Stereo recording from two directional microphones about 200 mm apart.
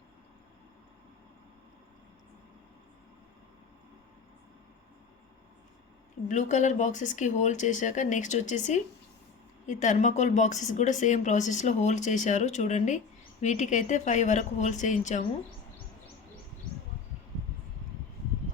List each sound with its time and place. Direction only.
6.2 s a woman's voice: 35° left (ahead or behind)